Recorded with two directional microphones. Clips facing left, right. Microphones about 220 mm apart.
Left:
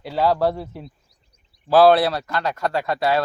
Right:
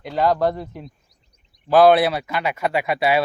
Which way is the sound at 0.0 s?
5° left (ahead or behind).